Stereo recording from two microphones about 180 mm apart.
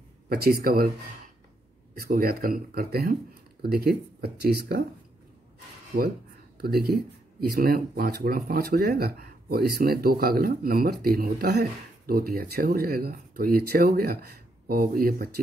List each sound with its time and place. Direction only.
0.3 s speech: 55° right (ahead or behind)
2.0 s speech: 55° right (ahead or behind)
6.6 s speech: 60° right (ahead or behind)